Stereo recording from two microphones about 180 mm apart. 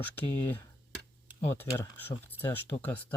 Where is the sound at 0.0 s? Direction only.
10° left (ahead or behind).